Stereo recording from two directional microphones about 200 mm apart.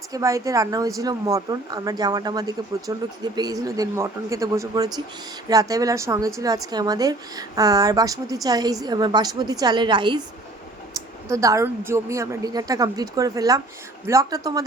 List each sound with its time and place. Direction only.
0.1 s a woman's voice: 15° right (ahead or behind)
11.3 s a woman's voice: 15° right (ahead or behind)